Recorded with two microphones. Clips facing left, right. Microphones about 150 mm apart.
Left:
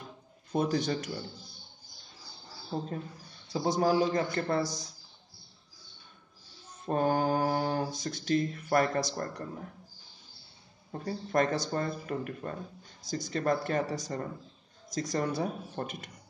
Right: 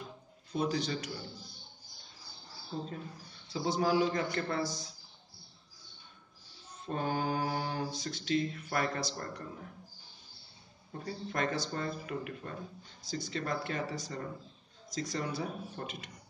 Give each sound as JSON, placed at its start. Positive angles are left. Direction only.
{"t": 0.5, "sound": "mantra", "side_deg": 50}
{"t": 2.7, "sound": "speech", "side_deg": 55}
{"t": 3.5, "sound": "a man's voice", "side_deg": 45}
{"t": 6.9, "sound": "mantra", "side_deg": 50}
{"t": 10.9, "sound": "mantra", "side_deg": 45}